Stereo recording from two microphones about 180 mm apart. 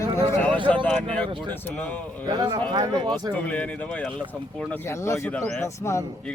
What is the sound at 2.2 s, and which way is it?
Speech, 25° right (ahead or behind).